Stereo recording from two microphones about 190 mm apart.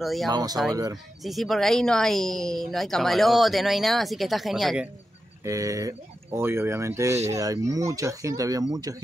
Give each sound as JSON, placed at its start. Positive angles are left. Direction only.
{"t": 0.0, "sound": "a woman's voice", "side_deg": 0}
{"t": 0.3, "sound": "speech", "side_deg": -20}
{"t": 1.2, "sound": "a woman's voice", "side_deg": 0}
{"t": 5.4, "sound": "speech", "side_deg": -15}